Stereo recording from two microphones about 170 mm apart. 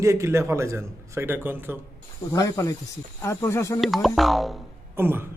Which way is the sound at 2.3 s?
20° left (ahead or behind).